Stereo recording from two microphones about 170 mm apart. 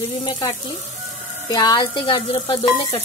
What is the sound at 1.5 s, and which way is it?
Speech, 25° left (ahead or behind).